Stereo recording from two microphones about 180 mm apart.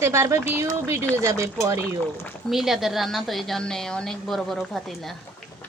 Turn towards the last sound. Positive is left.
turn(degrees=0)  # may be behind; listen again after turning